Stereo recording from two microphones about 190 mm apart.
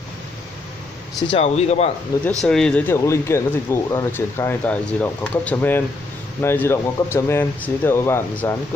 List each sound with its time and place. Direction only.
1.3 s speech: 35° left (ahead or behind)
2.1 s speech: 20° left (ahead or behind)
2.4 s speech: 5° left (ahead or behind)